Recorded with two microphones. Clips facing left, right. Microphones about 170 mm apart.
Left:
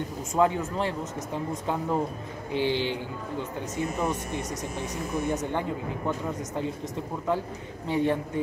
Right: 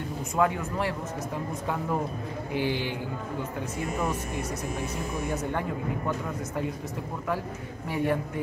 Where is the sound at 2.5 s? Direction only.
25° left (ahead or behind).